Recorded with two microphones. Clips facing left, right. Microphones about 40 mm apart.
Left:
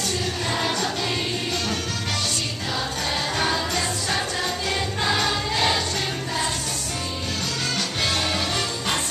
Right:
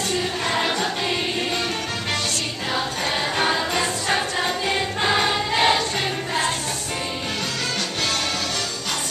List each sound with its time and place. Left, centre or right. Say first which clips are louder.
0.5 s music: right 2 dB; right
3.3 s choir: right 3 dB; right